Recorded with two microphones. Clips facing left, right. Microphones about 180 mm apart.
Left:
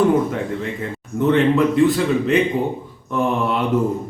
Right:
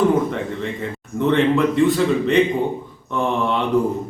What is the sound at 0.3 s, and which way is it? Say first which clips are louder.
Speech: left 1 dB; centre (ahead or behind).